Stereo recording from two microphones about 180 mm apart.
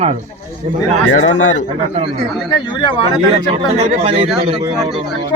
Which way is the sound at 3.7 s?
35° right (ahead or behind).